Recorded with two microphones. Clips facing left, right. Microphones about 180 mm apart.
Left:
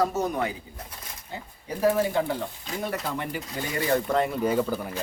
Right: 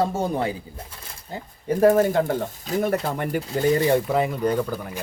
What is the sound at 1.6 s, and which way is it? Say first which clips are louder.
Speech: right 7 dB; 50° right (ahead or behind).